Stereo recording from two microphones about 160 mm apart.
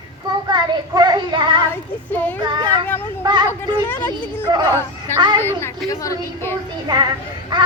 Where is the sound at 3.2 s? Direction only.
25° right (ahead or behind).